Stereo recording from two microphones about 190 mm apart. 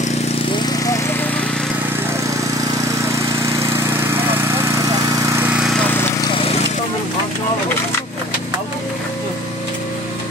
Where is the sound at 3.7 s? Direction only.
10° right (ahead or behind).